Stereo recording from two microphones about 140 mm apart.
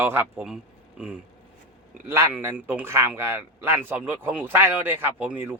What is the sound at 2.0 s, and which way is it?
A man's voice, 20° right (ahead or behind).